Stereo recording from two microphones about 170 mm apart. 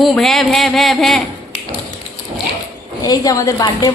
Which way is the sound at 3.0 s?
20° left (ahead or behind).